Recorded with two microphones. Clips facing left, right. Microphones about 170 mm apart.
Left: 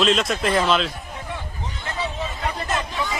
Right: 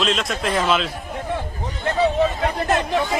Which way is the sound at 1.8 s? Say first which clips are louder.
Right 11 dB; 50° right (ahead or behind).